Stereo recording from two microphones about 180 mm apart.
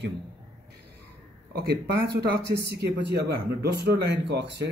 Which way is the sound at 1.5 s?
60° right (ahead or behind).